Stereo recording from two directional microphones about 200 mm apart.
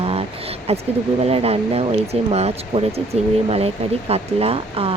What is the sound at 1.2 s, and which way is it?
Speech, 30° right (ahead or behind).